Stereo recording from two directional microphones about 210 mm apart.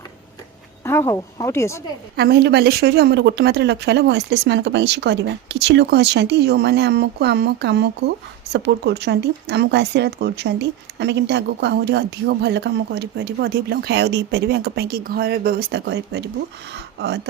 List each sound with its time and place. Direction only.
0.9 s speech: 10° left (ahead or behind)
2.1 s speech: 50° right (ahead or behind)